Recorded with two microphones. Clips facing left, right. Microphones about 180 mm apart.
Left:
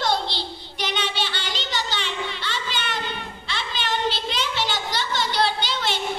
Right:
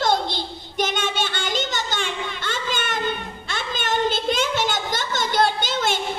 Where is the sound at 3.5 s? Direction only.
45° right (ahead or behind).